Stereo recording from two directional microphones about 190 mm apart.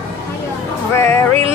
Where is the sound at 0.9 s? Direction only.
15° left (ahead or behind).